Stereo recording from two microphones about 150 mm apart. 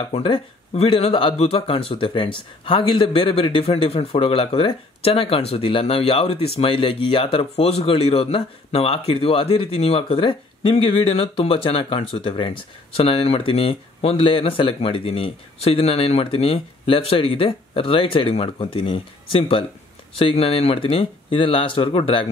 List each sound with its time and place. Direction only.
0.1 s speech: 40° left (ahead or behind)